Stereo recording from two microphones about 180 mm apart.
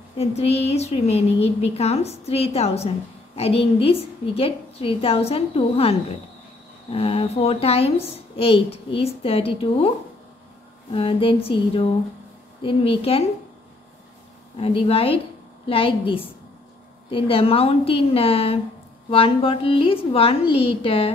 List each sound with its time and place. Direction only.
0.2 s a woman's voice: 35° left (ahead or behind)
14.6 s a woman's voice: 30° left (ahead or behind)